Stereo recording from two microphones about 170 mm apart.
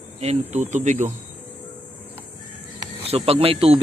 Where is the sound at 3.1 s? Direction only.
35° right (ahead or behind).